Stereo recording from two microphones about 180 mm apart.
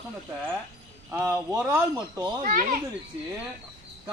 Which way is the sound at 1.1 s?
15° right (ahead or behind).